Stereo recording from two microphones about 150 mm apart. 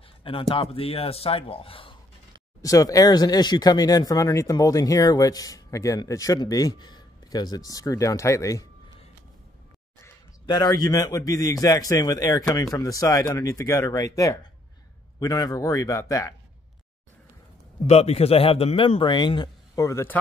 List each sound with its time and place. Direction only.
0.2 s a man's voice: 35° left (ahead or behind)
2.6 s speech: 25° left (ahead or behind)
10.4 s speech: 30° left (ahead or behind)
17.8 s a man's voice: 45° left (ahead or behind); by 20.2 s 20° left (ahead or behind)